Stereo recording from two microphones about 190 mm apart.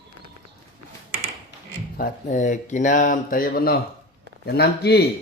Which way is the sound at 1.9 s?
45° left (ahead or behind).